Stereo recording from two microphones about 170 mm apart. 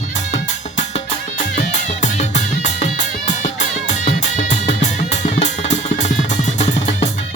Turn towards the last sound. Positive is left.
turn(degrees=45)  # may be behind; listen again after turning